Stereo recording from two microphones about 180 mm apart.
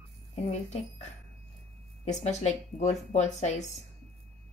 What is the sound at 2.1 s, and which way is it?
Speech, 40° left (ahead or behind).